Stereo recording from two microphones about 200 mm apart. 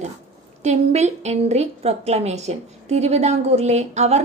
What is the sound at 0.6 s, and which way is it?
A woman's voice, 35° right (ahead or behind).